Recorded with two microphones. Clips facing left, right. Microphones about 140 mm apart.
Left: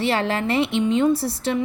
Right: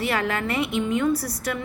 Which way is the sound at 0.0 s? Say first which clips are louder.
Left 3 dB; 30° left (ahead or behind).